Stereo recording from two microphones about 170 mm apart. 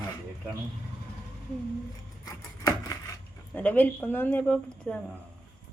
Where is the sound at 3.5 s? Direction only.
10° left (ahead or behind).